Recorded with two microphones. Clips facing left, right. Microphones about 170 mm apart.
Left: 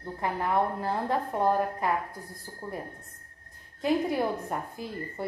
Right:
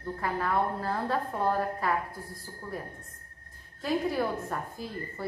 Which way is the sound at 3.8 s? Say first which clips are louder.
Left 2 dB; 20° left (ahead or behind).